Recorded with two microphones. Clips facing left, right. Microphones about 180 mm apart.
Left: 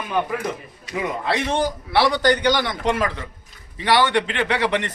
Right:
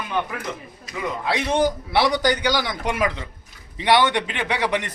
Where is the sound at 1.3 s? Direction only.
15° right (ahead or behind).